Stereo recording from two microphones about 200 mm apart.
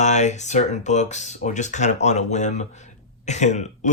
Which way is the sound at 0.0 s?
35° left (ahead or behind).